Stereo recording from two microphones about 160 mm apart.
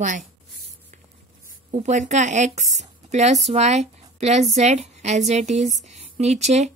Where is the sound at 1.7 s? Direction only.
50° right (ahead or behind).